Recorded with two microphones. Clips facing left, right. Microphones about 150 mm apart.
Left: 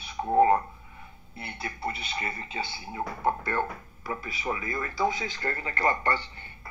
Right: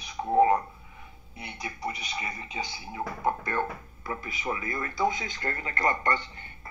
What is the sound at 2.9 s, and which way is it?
Speech, 30° left (ahead or behind).